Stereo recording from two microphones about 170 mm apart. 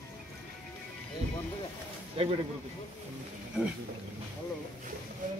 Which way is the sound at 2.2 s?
35° right (ahead or behind).